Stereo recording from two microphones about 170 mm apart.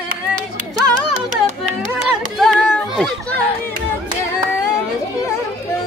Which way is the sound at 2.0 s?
Centre (ahead or behind).